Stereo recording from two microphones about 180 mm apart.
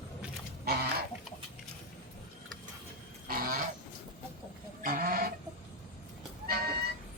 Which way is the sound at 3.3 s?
55° right (ahead or behind).